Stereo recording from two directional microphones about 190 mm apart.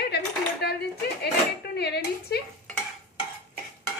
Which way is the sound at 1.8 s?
55° left (ahead or behind).